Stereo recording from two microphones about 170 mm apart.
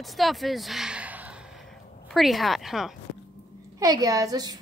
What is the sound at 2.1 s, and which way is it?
Speech, centre (ahead or behind).